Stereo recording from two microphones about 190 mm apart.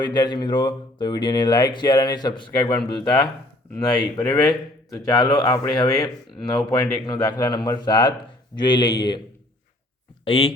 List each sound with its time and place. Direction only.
0.0 s speech: 25° left (ahead or behind)
2.5 s a man's voice: 10° left (ahead or behind)
3.8 s speech: 20° left (ahead or behind)
4.2 s a man's voice: 10° left (ahead or behind)
10.2 s speech: 30° left (ahead or behind)